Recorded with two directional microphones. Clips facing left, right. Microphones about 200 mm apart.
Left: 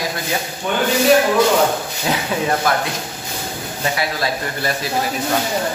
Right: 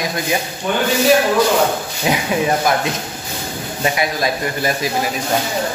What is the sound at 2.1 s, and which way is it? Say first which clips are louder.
Speech: right 3 dB; 15° right (ahead or behind).